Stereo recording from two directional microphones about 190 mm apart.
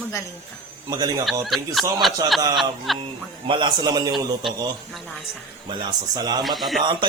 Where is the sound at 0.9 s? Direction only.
20° right (ahead or behind).